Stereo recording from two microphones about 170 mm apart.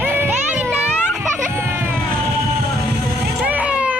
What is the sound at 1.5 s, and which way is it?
Music, 15° right (ahead or behind).